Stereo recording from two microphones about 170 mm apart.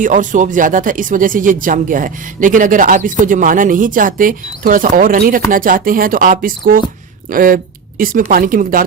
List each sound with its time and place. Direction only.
0.0 s speech: 50° right (ahead or behind)